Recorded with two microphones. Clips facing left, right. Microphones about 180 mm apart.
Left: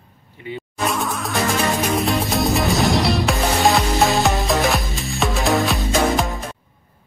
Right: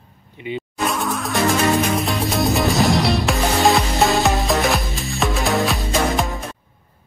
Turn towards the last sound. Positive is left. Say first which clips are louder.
# left 1 dB
turn(degrees=0)  # may be behind; listen again after turning